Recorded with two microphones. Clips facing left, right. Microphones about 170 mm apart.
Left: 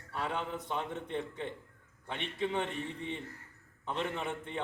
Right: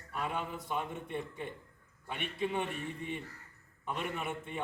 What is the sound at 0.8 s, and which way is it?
Speech, 15° right (ahead or behind).